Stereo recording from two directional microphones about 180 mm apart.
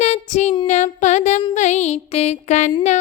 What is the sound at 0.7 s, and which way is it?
Music, 40° left (ahead or behind).